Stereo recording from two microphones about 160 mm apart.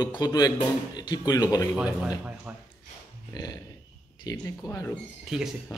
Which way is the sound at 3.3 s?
25° left (ahead or behind).